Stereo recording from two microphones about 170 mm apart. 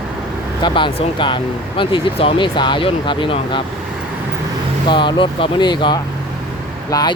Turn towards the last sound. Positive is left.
turn(degrees=20)  # may be behind; listen again after turning